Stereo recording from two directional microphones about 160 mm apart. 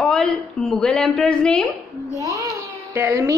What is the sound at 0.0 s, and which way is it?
A woman's voice, 5° left (ahead or behind).